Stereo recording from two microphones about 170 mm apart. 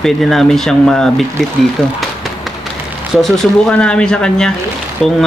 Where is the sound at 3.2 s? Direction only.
5° left (ahead or behind).